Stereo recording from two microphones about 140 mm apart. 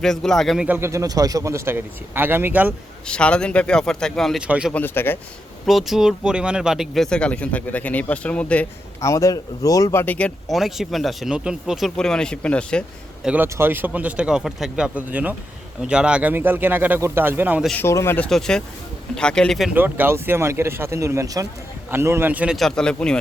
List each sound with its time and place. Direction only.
0.0 s speech: 5° left (ahead or behind)
0.7 s speech: 20° right (ahead or behind)
3.1 s speech: 5° left (ahead or behind)
4.4 s speech: 10° right (ahead or behind)
4.7 s speech: 15° left (ahead or behind)
5.6 s speech: centre (ahead or behind)
9.0 s speech: 20° left (ahead or behind)
13.2 s speech: 15° right (ahead or behind)
17.7 s speech: 20° left (ahead or behind)
18.3 s speech: 5° left (ahead or behind)
19.7 s speech: 15° right (ahead or behind)
22.5 s speech: 5° left (ahead or behind)